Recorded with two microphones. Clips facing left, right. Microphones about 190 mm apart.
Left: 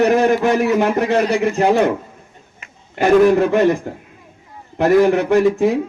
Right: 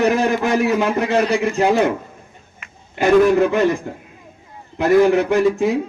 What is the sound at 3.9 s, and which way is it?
A man's voice, 50° left (ahead or behind).